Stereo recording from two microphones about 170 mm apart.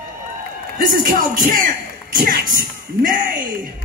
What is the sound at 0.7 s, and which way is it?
Speech, 55° right (ahead or behind).